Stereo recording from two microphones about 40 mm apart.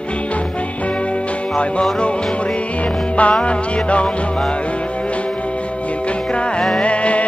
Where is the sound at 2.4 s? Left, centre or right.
Left.